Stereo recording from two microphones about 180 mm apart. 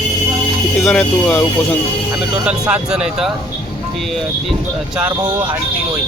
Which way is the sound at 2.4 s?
5° right (ahead or behind).